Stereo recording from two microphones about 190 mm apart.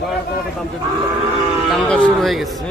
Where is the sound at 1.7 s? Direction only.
Centre (ahead or behind).